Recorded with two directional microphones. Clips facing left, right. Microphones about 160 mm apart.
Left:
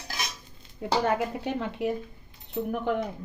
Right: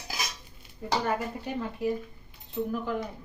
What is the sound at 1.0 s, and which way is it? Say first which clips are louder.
Speech: left 4 dB; 75° left (ahead or behind).